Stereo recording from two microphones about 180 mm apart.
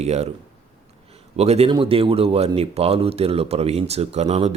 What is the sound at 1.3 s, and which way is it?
Speech, 35° right (ahead or behind).